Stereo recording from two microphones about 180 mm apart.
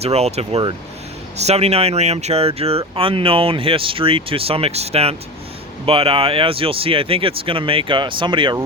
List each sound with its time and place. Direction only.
0.0 s speech: 35° right (ahead or behind)